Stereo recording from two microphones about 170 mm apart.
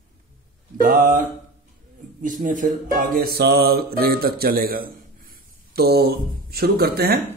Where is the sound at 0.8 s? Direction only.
50° right (ahead or behind).